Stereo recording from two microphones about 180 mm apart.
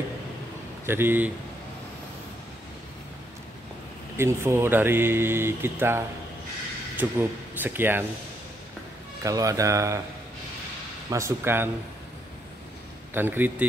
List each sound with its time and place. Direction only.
0.8 s speech: 10° right (ahead or behind)
4.2 s speech: 15° right (ahead or behind)
9.2 s speech: 20° right (ahead or behind)
11.1 s speech: 15° right (ahead or behind)
13.1 s speech: 10° right (ahead or behind)